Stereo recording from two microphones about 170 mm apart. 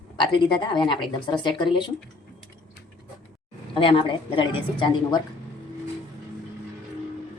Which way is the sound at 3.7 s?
30° left (ahead or behind).